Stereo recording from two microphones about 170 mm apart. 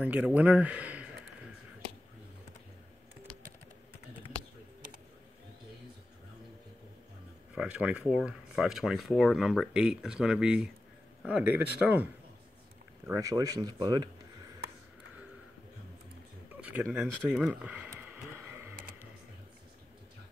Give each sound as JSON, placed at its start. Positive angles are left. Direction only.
{"t": 0.0, "sound": "speech", "side_deg": -10}
{"t": 7.5, "sound": "speech", "side_deg": -5}
{"t": 13.0, "sound": "speech", "side_deg": -20}
{"t": 16.9, "sound": "a sound", "side_deg": -5}